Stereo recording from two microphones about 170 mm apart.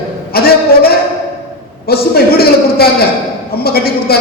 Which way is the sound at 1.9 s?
65° left (ahead or behind).